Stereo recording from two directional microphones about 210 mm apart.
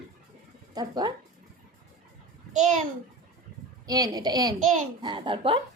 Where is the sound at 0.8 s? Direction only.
20° right (ahead or behind).